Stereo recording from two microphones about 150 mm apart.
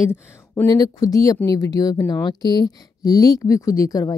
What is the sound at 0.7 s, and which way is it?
Speech, 25° left (ahead or behind).